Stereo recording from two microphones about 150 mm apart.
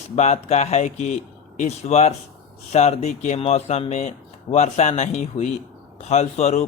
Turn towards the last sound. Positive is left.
turn(degrees=45)  # may be behind; listen again after turning